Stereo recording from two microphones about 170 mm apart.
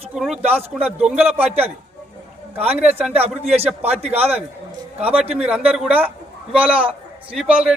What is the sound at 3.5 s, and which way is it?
Speech, 35° right (ahead or behind).